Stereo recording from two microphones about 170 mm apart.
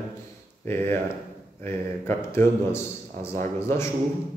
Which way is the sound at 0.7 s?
15° left (ahead or behind).